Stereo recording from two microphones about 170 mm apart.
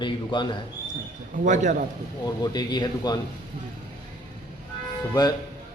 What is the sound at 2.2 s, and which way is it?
Speech, 25° left (ahead or behind).